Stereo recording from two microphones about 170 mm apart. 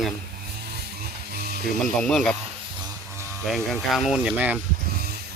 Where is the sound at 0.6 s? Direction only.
70° right (ahead or behind).